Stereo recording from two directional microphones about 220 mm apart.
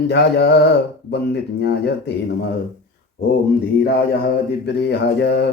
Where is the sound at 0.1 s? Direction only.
50° left (ahead or behind).